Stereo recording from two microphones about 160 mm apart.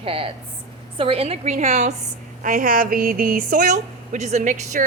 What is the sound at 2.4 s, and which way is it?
A woman's voice, 60° right (ahead or behind).